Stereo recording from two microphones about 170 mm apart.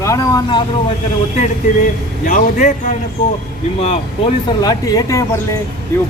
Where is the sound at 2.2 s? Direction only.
45° left (ahead or behind).